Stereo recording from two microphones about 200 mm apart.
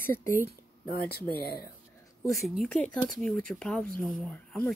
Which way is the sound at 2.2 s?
Centre (ahead or behind).